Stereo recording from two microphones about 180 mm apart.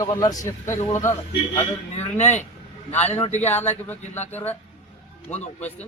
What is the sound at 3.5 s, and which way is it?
Speech, 10° left (ahead or behind).